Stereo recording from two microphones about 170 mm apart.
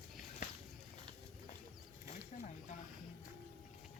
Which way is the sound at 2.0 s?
45° left (ahead or behind).